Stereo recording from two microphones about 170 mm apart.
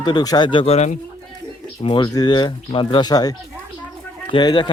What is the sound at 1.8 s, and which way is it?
Speech, 30° left (ahead or behind).